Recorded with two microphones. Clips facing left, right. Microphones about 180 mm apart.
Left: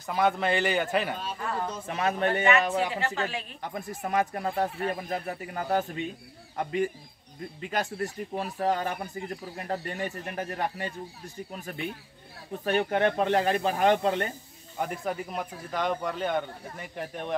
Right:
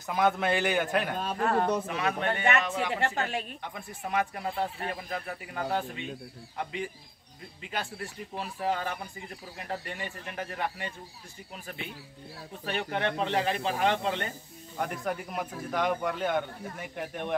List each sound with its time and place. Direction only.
0.0 s speech: centre (ahead or behind)
1.1 s speech: 55° right (ahead or behind)
2.0 s speech: 40° left (ahead or behind)
2.9 s a woman's voice: 55° right (ahead or behind)
3.7 s speech: 40° left (ahead or behind)
14.8 s speech: centre (ahead or behind)